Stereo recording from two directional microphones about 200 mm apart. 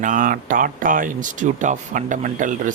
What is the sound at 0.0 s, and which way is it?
Speech, 40° right (ahead or behind).